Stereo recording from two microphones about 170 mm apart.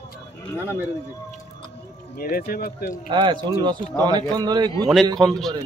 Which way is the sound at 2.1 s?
60° left (ahead or behind).